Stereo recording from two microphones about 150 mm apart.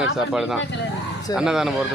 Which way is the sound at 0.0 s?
5° right (ahead or behind).